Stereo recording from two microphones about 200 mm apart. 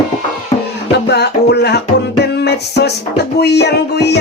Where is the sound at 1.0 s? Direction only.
55° left (ahead or behind).